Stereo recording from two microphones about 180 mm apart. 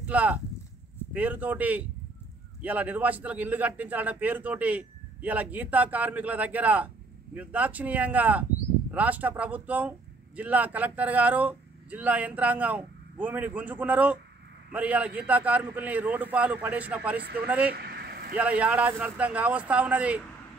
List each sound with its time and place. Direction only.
0.0 s speech: 10° right (ahead or behind)
17.7 s vehicle: 60° right (ahead or behind)
18.3 s speech: 5° right (ahead or behind)